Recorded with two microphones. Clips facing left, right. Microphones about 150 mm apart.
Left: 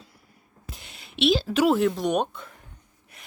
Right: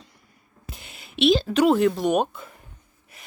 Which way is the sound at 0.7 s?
Centre (ahead or behind).